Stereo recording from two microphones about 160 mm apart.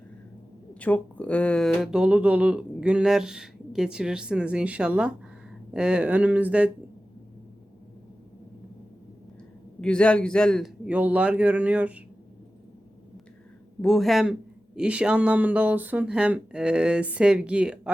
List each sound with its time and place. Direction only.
0.7 s speech: 10° left (ahead or behind); by 6.7 s 10° right (ahead or behind)
9.8 s speech: 5° left (ahead or behind)
10.8 s speech: 10° right (ahead or behind)
13.8 s speech: centre (ahead or behind)